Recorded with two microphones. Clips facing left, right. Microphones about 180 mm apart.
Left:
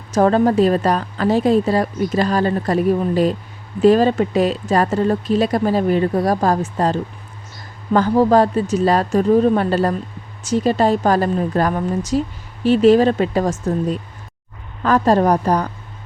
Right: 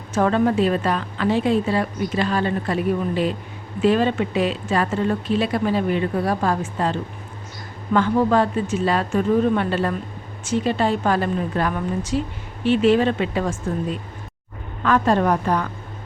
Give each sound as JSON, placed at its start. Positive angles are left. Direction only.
{"t": 0.1, "sound": "speech", "side_deg": 40}